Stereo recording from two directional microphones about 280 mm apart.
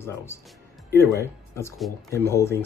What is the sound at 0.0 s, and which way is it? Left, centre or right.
Speech, centre.